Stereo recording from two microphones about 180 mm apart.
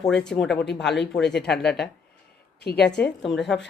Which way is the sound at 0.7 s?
75° left (ahead or behind).